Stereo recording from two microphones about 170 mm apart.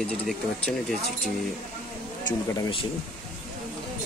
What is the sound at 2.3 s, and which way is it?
Speech, 30° left (ahead or behind).